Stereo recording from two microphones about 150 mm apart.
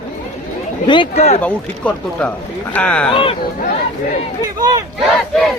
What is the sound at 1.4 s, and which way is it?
Speech, 10° left (ahead or behind).